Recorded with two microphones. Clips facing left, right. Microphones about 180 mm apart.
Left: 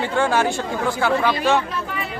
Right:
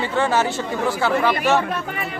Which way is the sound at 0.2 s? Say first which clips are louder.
Even; 5° right (ahead or behind).